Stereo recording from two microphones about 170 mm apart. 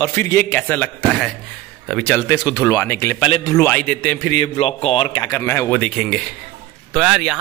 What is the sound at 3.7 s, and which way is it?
Speech, 5° left (ahead or behind).